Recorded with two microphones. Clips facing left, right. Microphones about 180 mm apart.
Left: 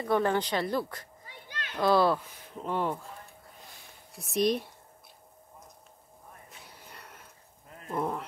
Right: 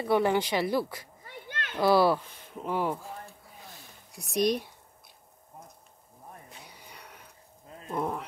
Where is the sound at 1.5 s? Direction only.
55° right (ahead or behind).